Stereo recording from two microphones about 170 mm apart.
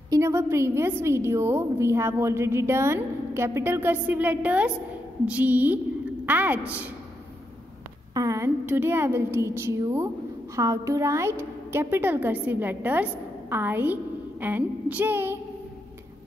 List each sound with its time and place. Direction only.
0.1 s a woman's voice: 15° right (ahead or behind)
8.1 s a woman's voice: 20° right (ahead or behind)